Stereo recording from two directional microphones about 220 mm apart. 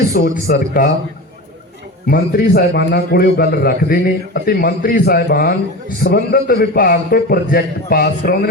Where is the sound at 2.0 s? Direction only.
40° left (ahead or behind).